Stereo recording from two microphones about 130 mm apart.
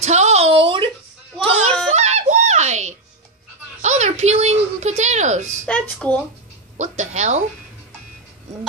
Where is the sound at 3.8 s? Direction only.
65° right (ahead or behind).